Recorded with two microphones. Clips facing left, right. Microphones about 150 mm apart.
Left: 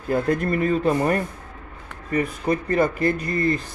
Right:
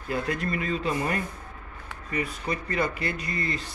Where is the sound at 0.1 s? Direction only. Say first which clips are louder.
Left 7 dB; 50° left (ahead or behind).